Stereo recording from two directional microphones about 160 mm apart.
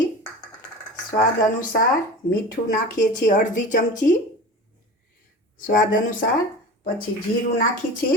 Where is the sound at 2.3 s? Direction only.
60° left (ahead or behind).